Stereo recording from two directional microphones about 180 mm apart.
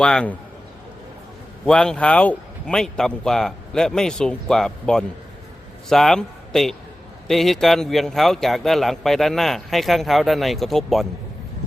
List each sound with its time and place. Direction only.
0.0 s speech: 5° left (ahead or behind)
1.6 s speech: 5° left (ahead or behind)